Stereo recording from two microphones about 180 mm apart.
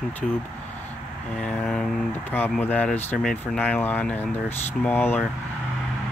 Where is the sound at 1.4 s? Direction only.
5° left (ahead or behind).